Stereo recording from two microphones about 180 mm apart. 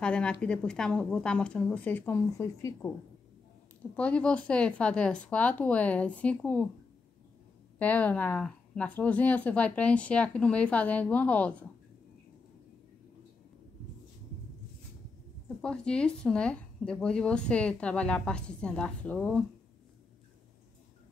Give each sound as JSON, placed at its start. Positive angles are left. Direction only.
{"t": 0.0, "sound": "speech", "side_deg": 5}
{"t": 3.9, "sound": "a woman's voice", "side_deg": 5}
{"t": 7.8, "sound": "a woman's voice", "side_deg": 10}
{"t": 15.4, "sound": "speech", "side_deg": 5}